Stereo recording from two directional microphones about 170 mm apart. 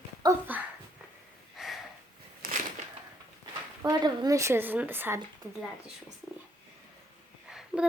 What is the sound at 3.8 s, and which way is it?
A woman's voice, 25° right (ahead or behind).